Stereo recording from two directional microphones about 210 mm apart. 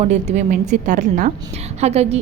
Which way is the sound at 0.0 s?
30° right (ahead or behind).